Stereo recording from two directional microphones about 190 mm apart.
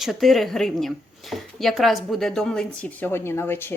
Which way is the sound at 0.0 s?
Centre (ahead or behind).